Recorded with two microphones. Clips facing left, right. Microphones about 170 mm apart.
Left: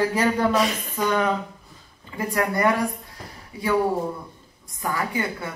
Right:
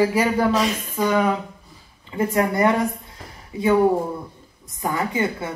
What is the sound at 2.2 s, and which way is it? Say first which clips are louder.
A woman's voice: right 3 dB; 20° right (ahead or behind).